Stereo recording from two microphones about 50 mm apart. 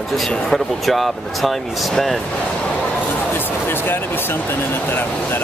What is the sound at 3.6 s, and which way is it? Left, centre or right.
Speech, left.